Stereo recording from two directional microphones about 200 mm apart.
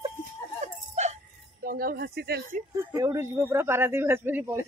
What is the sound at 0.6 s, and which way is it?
Music, 35° right (ahead or behind).